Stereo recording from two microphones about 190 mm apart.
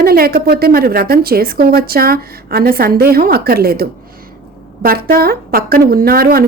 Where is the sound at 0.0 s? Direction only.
55° right (ahead or behind).